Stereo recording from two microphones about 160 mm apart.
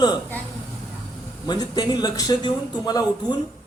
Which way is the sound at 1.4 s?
25° left (ahead or behind).